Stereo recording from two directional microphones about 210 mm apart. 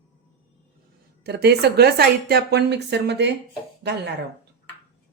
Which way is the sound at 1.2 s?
50° right (ahead or behind).